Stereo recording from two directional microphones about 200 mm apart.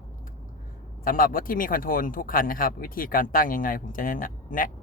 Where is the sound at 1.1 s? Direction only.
45° left (ahead or behind).